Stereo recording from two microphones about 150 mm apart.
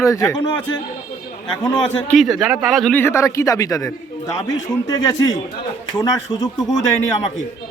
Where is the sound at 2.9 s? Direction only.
15° left (ahead or behind).